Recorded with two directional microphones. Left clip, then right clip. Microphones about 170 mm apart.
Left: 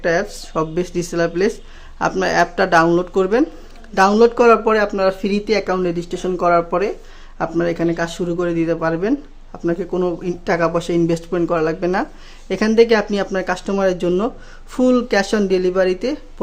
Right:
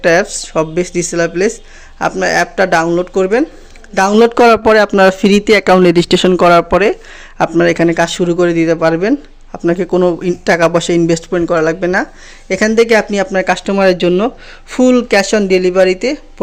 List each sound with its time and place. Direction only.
0.0 s speech: 25° right (ahead or behind); by 3.4 s 5° right (ahead or behind)
4.2 s speech: 50° right (ahead or behind)
7.3 s speech: 35° right (ahead or behind)
9.6 s speech: 30° right (ahead or behind); by 16.1 s 15° right (ahead or behind)